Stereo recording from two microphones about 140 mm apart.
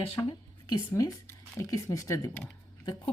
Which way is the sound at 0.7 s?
30° left (ahead or behind).